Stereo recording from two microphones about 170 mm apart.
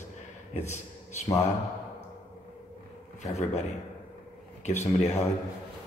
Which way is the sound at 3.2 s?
40° left (ahead or behind).